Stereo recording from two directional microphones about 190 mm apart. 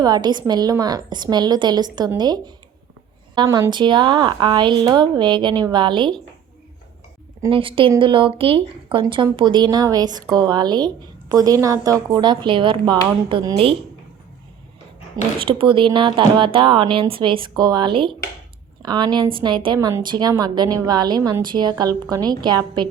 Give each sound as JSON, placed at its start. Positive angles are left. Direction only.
{"t": 0.0, "sound": "a woman's voice", "side_deg": -20}
{"t": 7.5, "sound": "a woman's voice", "side_deg": -30}
{"t": 15.4, "sound": "a woman's voice", "side_deg": -25}